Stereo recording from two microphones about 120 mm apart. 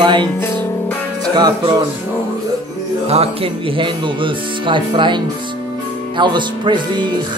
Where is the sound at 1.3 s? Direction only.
40° right (ahead or behind).